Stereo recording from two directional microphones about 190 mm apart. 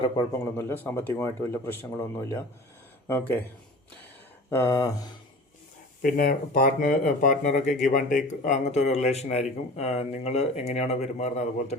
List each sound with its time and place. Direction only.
0.3 s speech: 10° left (ahead or behind)
3.1 s speech: 10° left (ahead or behind)
4.4 s speech: 15° left (ahead or behind)
6.0 s speech: 45° left (ahead or behind)